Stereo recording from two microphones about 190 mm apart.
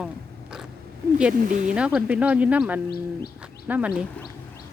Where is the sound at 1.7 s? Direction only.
5° right (ahead or behind).